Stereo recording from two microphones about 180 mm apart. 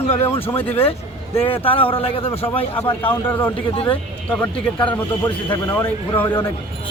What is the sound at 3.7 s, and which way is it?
Speech, 30° left (ahead or behind).